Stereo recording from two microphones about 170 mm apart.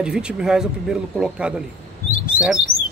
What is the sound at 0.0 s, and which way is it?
Speech, 5° right (ahead or behind).